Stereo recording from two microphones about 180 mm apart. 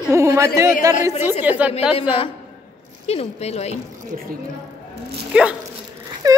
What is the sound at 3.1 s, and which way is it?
Speech, 35° left (ahead or behind).